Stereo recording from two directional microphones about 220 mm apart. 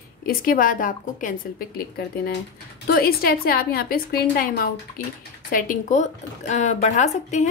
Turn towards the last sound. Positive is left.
turn(degrees=30)  # may be behind; listen again after turning